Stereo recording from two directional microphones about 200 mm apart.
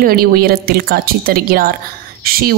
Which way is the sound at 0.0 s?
50° right (ahead or behind).